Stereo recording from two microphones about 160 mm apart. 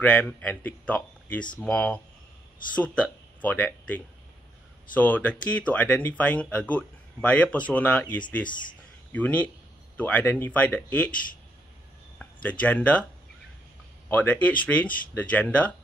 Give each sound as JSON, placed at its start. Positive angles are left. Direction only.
{"t": 0.0, "sound": "speech", "side_deg": 10}
{"t": 8.5, "sound": "speech", "side_deg": 30}
{"t": 9.1, "sound": "speech", "side_deg": 10}
{"t": 12.2, "sound": "speech", "side_deg": 10}
{"t": 14.0, "sound": "speech", "side_deg": 10}